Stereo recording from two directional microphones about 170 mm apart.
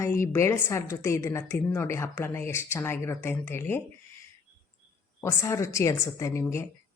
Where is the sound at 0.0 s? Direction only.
15° left (ahead or behind).